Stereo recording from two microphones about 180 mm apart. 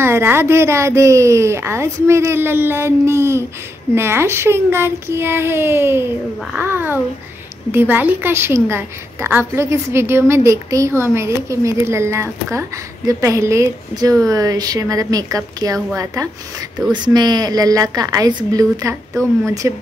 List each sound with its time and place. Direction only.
0.0 s a woman's voice: 15° right (ahead or behind)